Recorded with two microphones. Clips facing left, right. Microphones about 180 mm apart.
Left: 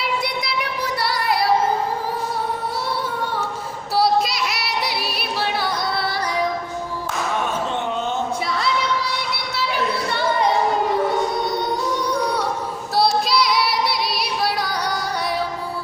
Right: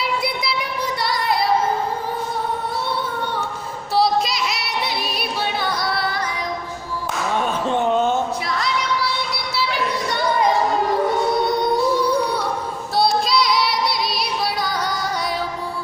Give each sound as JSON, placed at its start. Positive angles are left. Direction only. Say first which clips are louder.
{"t": 4.9, "sound": "yodeling", "louder": "right 1 dB", "side_deg": 5}
{"t": 13.0, "sound": "child singing", "louder": "even", "side_deg": 5}
{"t": 13.8, "sound": "female singing", "louder": "even", "side_deg": 5}
{"t": 14.2, "sound": "yodeling", "louder": "even", "side_deg": 70}